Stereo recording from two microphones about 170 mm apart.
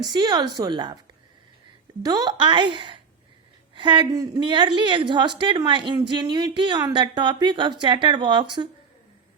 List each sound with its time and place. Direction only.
0.0 s a woman's voice: 25° right (ahead or behind)
2.0 s a woman's voice: 25° right (ahead or behind)